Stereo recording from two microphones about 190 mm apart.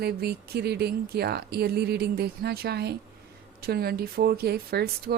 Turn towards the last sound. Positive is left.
turn(degrees=-55)  # may be behind; listen again after turning